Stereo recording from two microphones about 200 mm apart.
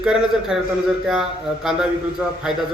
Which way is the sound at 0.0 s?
Centre (ahead or behind).